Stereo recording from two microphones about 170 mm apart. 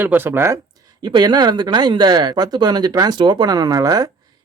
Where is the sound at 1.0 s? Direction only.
25° right (ahead or behind).